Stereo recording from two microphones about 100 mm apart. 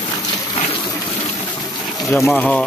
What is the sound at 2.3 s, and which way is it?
Speech, 15° left (ahead or behind).